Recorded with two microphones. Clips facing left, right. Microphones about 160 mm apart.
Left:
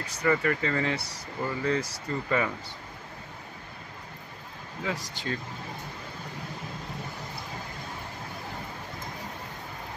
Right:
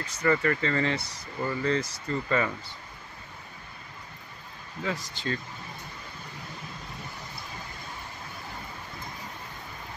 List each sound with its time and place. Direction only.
0.0 s speech: 10° left (ahead or behind)
4.8 s speech: 15° left (ahead or behind)